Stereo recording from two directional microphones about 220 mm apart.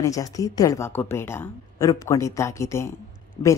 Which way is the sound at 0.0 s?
15° left (ahead or behind).